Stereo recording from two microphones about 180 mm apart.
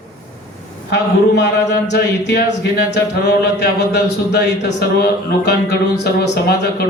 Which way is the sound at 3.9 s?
70° left (ahead or behind).